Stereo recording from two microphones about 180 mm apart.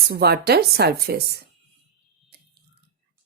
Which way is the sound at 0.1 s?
60° right (ahead or behind).